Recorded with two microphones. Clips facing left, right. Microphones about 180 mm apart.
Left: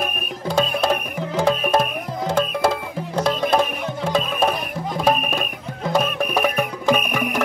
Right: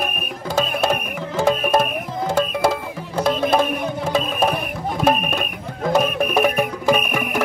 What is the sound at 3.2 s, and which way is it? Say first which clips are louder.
Music: right 1 dB; 5° right (ahead or behind).